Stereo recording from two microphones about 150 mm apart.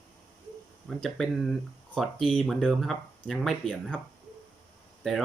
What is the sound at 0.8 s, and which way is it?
Speech, centre (ahead or behind).